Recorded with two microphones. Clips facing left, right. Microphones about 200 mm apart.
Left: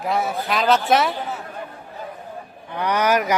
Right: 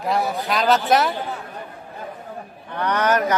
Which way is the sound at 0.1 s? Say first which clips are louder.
Right 1 dB; centre (ahead or behind).